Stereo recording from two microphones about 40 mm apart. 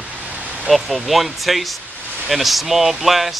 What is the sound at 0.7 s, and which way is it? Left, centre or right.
Speech, centre.